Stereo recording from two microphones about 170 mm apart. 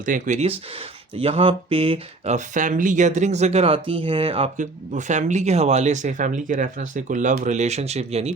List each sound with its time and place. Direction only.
0.0 s speech: 50° right (ahead or behind)
4.5 s speech: 45° right (ahead or behind)